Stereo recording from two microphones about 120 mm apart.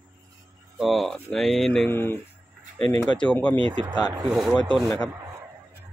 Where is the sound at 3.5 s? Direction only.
45° right (ahead or behind).